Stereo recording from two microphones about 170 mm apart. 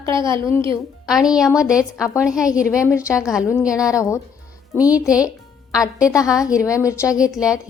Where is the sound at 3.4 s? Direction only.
15° left (ahead or behind).